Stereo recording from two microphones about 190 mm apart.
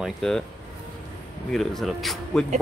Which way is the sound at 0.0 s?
Centre (ahead or behind).